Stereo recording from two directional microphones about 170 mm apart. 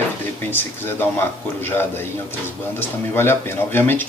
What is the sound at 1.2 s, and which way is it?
Speech, 10° left (ahead or behind).